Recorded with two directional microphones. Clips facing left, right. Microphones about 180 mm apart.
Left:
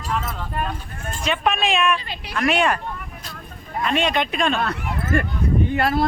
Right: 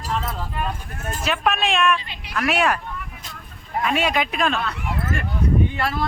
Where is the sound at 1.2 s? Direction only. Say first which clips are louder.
Left 1 dB; centre (ahead or behind).